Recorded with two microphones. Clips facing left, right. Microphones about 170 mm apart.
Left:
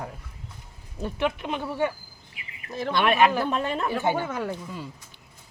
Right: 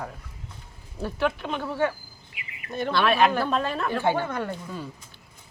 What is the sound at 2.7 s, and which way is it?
Speech, centre (ahead or behind).